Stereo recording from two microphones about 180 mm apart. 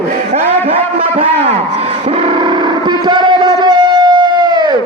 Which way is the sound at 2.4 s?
25° right (ahead or behind).